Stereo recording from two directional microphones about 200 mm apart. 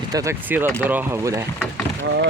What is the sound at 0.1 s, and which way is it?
Speech, 10° right (ahead or behind).